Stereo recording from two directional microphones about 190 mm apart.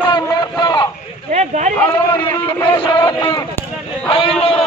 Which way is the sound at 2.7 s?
25° left (ahead or behind).